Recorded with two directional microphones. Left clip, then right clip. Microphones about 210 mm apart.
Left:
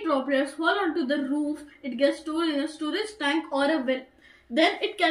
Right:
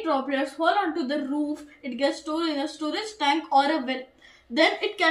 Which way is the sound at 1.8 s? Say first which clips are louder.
Left 2 dB; 15° right (ahead or behind).